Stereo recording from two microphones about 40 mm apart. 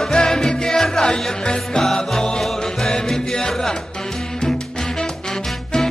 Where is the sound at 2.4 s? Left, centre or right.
Centre.